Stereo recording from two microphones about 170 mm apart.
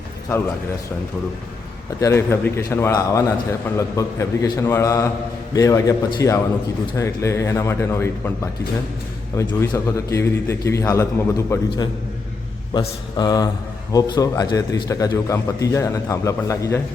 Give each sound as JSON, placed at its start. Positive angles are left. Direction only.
{"t": 2.0, "sound": "a man's voice", "side_deg": 15}
{"t": 9.3, "sound": "a man's voice", "side_deg": 15}